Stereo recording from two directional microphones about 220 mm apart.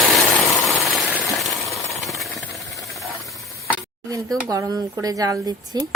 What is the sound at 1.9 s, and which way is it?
Jackhammer, centre (ahead or behind).